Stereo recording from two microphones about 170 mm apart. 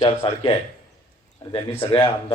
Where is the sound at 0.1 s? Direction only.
35° left (ahead or behind).